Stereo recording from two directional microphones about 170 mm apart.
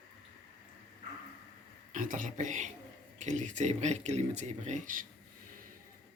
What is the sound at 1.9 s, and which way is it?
Speech, 50° right (ahead or behind).